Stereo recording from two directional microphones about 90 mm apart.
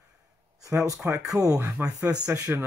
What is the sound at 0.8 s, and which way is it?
Speech, 40° right (ahead or behind).